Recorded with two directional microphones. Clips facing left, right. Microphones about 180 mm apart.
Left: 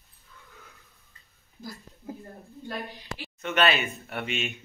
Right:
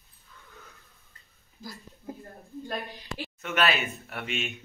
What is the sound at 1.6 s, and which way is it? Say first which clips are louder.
Speech: left 2 dB; 55° left (ahead or behind).